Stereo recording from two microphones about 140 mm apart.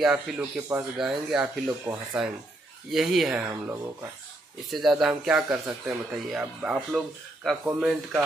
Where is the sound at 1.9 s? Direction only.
30° right (ahead or behind).